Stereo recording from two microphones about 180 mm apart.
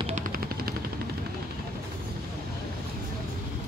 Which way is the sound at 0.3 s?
55° right (ahead or behind).